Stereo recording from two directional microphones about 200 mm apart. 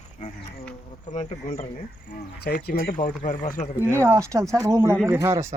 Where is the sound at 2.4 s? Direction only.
50° left (ahead or behind).